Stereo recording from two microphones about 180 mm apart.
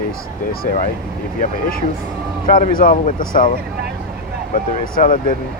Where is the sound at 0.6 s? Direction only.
45° left (ahead or behind).